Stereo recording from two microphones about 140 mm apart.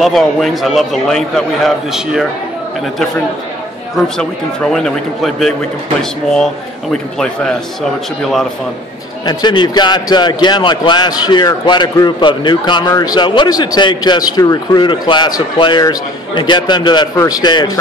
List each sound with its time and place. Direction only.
0.0 s a man's voice: centre (ahead or behind)
4.2 s a man's voice: 5° left (ahead or behind)
9.2 s a man's voice: 30° left (ahead or behind)
14.8 s a man's voice: 35° left (ahead or behind)